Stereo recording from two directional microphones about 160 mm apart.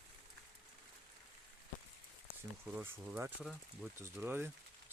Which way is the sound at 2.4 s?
15° right (ahead or behind).